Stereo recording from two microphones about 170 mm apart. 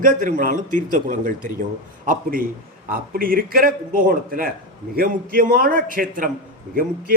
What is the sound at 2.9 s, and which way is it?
A man's voice, 55° right (ahead or behind).